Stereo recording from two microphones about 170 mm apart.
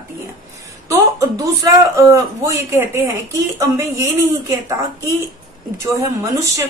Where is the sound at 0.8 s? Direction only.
20° right (ahead or behind).